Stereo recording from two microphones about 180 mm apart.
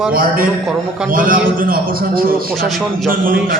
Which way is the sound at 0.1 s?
55° right (ahead or behind).